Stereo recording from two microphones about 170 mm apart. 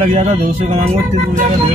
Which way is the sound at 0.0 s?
35° right (ahead or behind).